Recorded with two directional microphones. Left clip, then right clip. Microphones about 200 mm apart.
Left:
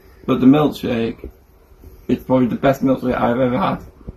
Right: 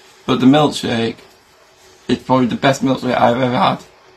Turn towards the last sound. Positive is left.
turn(degrees=-15)  # may be behind; listen again after turning